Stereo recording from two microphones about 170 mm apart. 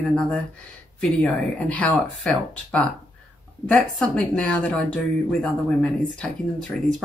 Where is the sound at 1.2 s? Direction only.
5° left (ahead or behind).